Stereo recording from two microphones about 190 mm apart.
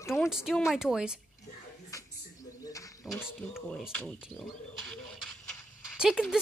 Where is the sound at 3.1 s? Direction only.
15° left (ahead or behind).